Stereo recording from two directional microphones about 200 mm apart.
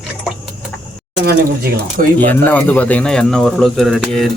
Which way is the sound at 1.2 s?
50° right (ahead or behind).